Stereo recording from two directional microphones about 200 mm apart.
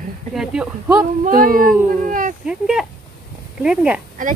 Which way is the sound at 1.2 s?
45° right (ahead or behind).